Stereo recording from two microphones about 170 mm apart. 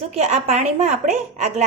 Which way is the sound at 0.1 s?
40° right (ahead or behind).